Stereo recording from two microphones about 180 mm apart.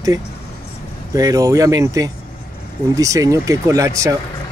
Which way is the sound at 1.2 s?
20° right (ahead or behind).